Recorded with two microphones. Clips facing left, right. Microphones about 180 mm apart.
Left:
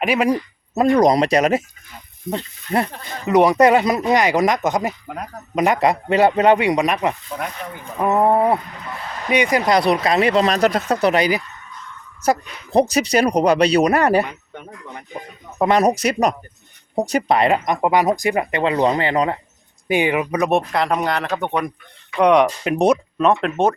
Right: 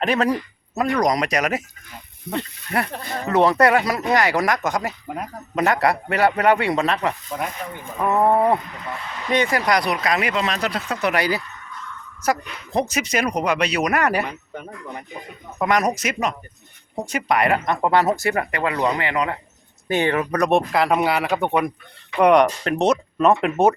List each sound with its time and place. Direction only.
0.0 s a man's voice: 10° left (ahead or behind)
0.8 s speech: 30° left (ahead or behind)
2.7 s speech: 25° left (ahead or behind)
3.2 s a man's voice: 15° left (ahead or behind); by 11.1 s 40° left (ahead or behind)
11.1 s a man's voice: 20° left (ahead or behind)
12.2 s speech: 30° left (ahead or behind)
15.5 s speech: 30° left (ahead or behind)
19.9 s speech: 10° left (ahead or behind)
22.6 s a man's voice: 10° left (ahead or behind)
23.1 s speech: 5° right (ahead or behind)